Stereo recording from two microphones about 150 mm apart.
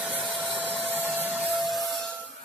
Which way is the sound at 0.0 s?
5° right (ahead or behind).